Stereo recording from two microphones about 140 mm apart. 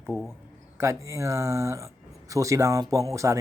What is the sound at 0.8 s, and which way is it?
Speech, 20° right (ahead or behind).